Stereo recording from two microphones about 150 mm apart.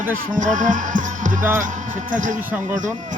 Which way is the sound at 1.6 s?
60° right (ahead or behind).